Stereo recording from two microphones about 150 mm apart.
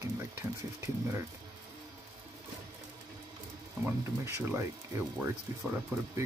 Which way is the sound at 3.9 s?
20° right (ahead or behind).